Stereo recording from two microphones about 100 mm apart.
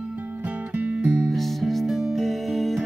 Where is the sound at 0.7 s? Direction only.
10° right (ahead or behind).